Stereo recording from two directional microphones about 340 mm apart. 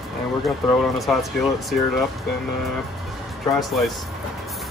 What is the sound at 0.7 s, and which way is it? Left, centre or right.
Speech, centre.